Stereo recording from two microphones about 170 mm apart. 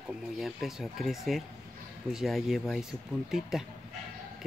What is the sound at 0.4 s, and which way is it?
Speech, centre (ahead or behind).